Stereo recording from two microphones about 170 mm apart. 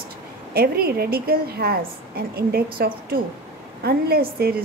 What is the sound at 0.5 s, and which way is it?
A woman's voice, 65° right (ahead or behind).